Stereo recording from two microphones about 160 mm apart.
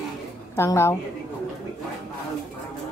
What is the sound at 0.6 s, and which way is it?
Speech, 15° left (ahead or behind).